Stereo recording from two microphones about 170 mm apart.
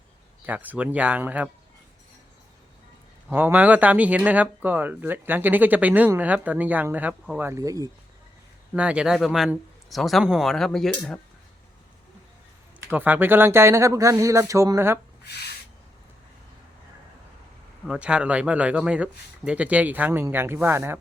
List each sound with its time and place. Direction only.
0.4 s speech: 10° right (ahead or behind)
3.2 s speech: 10° right (ahead or behind)
8.7 s a man's voice: 5° right (ahead or behind)
12.9 s speech: 10° right (ahead or behind)
17.8 s speech: 5° right (ahead or behind)